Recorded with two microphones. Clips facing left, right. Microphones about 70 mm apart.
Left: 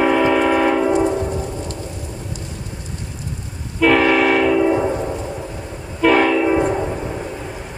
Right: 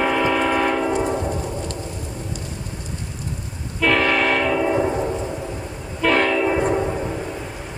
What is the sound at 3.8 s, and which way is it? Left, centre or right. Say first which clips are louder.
Vehicle: left 4 dB; centre.